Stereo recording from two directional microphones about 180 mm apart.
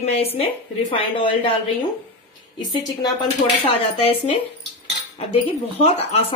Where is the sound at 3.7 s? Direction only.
30° left (ahead or behind).